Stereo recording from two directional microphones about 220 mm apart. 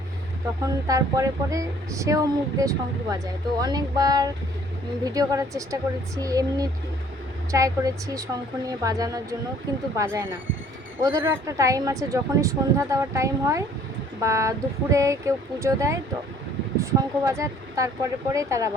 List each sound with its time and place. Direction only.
0.6 s speech: 15° right (ahead or behind)